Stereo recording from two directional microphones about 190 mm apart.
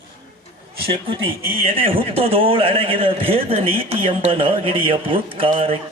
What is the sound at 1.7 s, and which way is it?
A man's voice, 30° right (ahead or behind).